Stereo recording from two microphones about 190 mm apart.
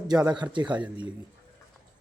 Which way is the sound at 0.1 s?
20° right (ahead or behind).